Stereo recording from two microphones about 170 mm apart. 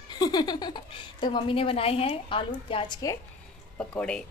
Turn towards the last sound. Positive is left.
turn(degrees=5)  # may be behind; listen again after turning